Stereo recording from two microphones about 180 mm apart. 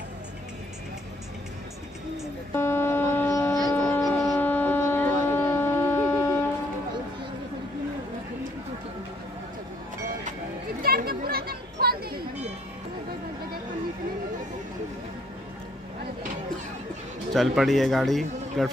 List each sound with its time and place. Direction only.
2.5 s a sound: 15° left (ahead or behind)
10.8 s children playing: 55° right (ahead or behind)
17.3 s speech: centre (ahead or behind)